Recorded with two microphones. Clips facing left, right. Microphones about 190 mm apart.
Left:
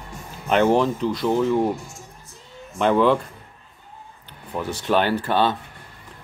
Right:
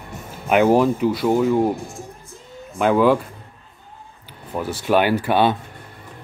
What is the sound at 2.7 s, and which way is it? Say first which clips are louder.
Speech: right 2 dB; 5° right (ahead or behind).